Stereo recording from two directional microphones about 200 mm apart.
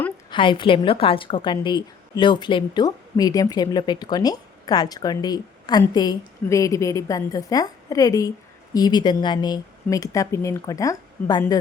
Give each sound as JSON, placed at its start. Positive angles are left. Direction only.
{"t": 0.3, "sound": "a woman's voice", "side_deg": 25}